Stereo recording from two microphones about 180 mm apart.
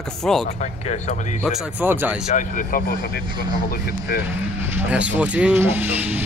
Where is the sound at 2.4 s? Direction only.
45° left (ahead or behind).